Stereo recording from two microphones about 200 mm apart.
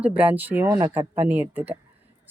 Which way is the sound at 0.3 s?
10° right (ahead or behind).